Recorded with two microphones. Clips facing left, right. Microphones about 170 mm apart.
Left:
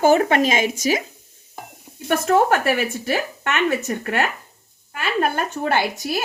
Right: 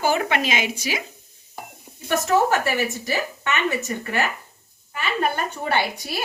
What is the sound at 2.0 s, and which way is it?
Speech, 55° left (ahead or behind).